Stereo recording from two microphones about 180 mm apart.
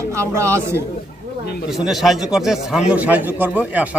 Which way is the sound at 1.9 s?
Centre (ahead or behind).